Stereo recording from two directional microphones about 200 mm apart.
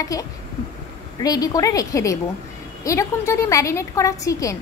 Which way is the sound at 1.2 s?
20° left (ahead or behind).